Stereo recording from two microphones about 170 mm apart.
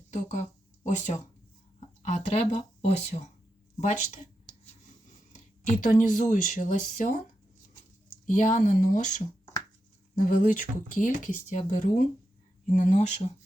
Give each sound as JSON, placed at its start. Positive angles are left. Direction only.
{"t": 0.1, "sound": "speech", "side_deg": 45}
{"t": 2.0, "sound": "speech", "side_deg": 45}
{"t": 5.3, "sound": "speech", "side_deg": 50}
{"t": 8.3, "sound": "speech", "side_deg": 50}